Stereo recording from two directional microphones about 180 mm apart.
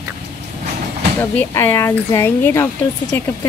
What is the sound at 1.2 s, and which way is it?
Speech, 10° left (ahead or behind).